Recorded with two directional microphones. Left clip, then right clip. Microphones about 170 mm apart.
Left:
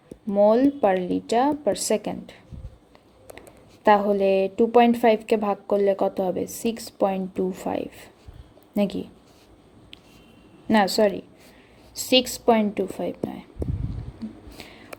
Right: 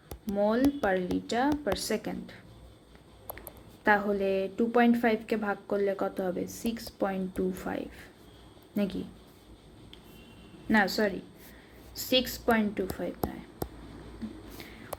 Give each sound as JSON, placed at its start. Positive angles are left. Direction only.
{"t": 0.3, "sound": "a woman's voice", "side_deg": 30}
{"t": 3.8, "sound": "a woman's voice", "side_deg": 30}
{"t": 10.7, "sound": "a woman's voice", "side_deg": 35}
{"t": 14.6, "sound": "a sound", "side_deg": 35}